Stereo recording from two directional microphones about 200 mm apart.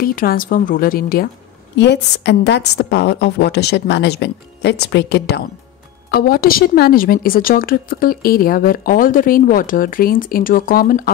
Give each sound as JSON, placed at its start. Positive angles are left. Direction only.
{"t": 0.0, "sound": "a woman's voice", "side_deg": 45}
{"t": 1.8, "sound": "a woman's voice", "side_deg": 60}